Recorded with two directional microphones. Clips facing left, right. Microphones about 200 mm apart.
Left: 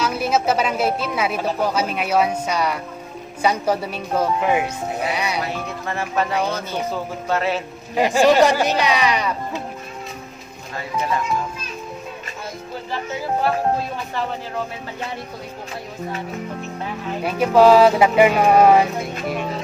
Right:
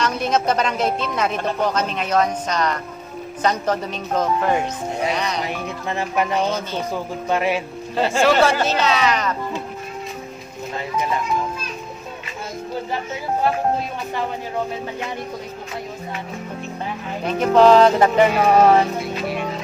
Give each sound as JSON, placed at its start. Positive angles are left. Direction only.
{"t": 0.0, "sound": "a woman's voice", "side_deg": 5}
{"t": 5.4, "sound": "speech", "side_deg": -15}
{"t": 6.3, "sound": "a woman's voice", "side_deg": 10}
{"t": 6.9, "sound": "speech", "side_deg": -15}
{"t": 7.9, "sound": "a woman's voice", "side_deg": 15}
{"t": 17.2, "sound": "a woman's voice", "side_deg": 5}